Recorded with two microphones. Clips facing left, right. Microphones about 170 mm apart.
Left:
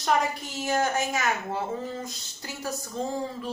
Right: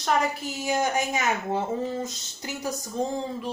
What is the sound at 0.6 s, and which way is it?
A woman's voice, 15° right (ahead or behind).